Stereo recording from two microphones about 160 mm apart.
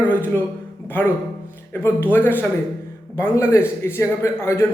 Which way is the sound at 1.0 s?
10° left (ahead or behind).